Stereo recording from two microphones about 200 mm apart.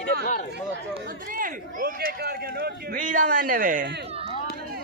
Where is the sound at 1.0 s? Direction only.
45° right (ahead or behind).